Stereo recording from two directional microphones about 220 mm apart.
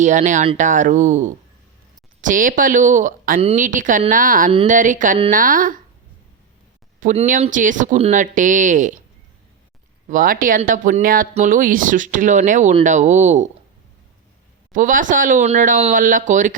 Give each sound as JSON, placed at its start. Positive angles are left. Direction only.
{"t": 0.0, "sound": "speech", "side_deg": -35}
{"t": 7.0, "sound": "speech", "side_deg": -35}
{"t": 10.1, "sound": "speech", "side_deg": -40}
{"t": 14.7, "sound": "speech", "side_deg": -35}